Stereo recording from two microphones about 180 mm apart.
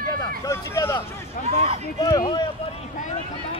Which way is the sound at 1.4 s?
50° left (ahead or behind).